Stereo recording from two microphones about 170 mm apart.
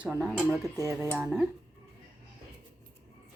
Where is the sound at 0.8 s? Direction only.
20° right (ahead or behind).